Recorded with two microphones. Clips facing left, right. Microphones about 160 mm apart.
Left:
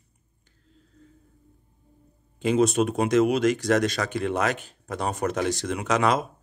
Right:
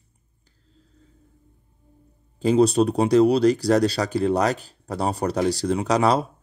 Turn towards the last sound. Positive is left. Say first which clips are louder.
# right 3 dB
turn(degrees=-35)  # may be behind; listen again after turning